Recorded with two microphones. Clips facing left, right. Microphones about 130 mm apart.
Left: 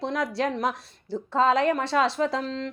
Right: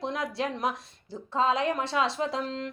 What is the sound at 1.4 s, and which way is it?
A woman's voice, 45° left (ahead or behind).